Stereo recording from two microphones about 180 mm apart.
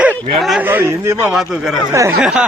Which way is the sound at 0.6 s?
15° right (ahead or behind).